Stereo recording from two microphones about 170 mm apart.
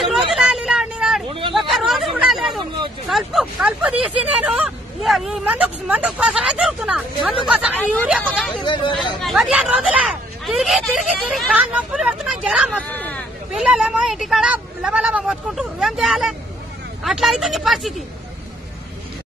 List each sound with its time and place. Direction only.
0.3 s vehicle: centre (ahead or behind)
1.5 s chatter: centre (ahead or behind)
3.1 s speech: centre (ahead or behind)
8.2 s speech: 5° left (ahead or behind)
8.6 s speech: 30° left (ahead or behind)
9.2 s speech: centre (ahead or behind)
12.7 s hubbub: 10° left (ahead or behind)
13.5 s speech: 5° right (ahead or behind)